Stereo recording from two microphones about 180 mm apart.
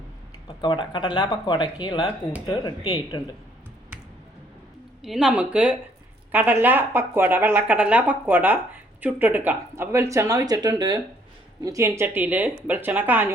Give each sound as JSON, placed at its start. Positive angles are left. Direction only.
{"t": 0.4, "sound": "speech", "side_deg": 25}
{"t": 5.0, "sound": "speech", "side_deg": 0}